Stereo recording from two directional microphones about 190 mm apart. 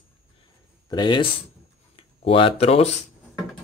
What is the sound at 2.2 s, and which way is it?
Speech, 30° left (ahead or behind).